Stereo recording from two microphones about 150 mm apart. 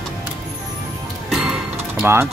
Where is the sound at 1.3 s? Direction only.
5° right (ahead or behind).